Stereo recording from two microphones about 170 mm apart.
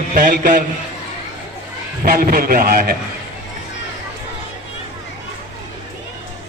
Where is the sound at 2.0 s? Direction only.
55° right (ahead or behind).